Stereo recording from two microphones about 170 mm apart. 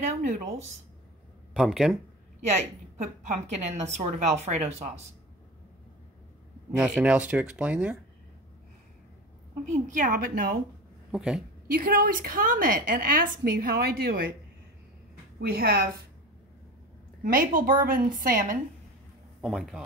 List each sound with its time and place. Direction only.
0.0 s a woman's voice: 45° right (ahead or behind)
1.5 s speech: centre (ahead or behind)
3.6 s speech: 40° right (ahead or behind)
6.8 s speech: 5° right (ahead or behind)
9.7 s a woman's voice: 50° right (ahead or behind)
11.1 s speech: 5° right (ahead or behind)
11.6 s a woman's voice: 55° right (ahead or behind)
15.4 s a woman's voice: 60° right (ahead or behind)
17.2 s a woman's voice: 55° right (ahead or behind)
19.4 s speech: centre (ahead or behind)